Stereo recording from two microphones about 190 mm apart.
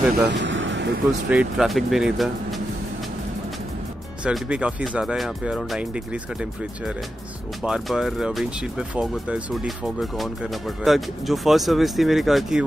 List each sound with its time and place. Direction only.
0.1 s vehicle: 70° right (ahead or behind)
1.3 s speech: 5° right (ahead or behind)
4.2 s speech: 5° right (ahead or behind)
7.6 s speech: 5° right (ahead or behind)